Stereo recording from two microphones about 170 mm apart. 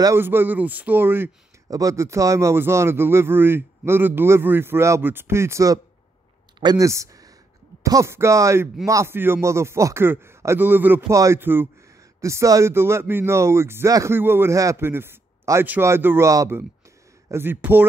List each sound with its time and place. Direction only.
0.0 s speech: 15° right (ahead or behind)